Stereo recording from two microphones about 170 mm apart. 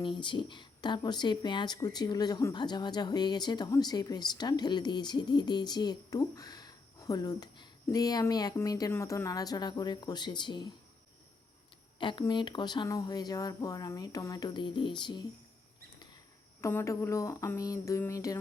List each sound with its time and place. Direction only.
0.0 s speech: 30° left (ahead or behind)
11.9 s speech: 30° left (ahead or behind)
16.6 s a sound: 15° left (ahead or behind)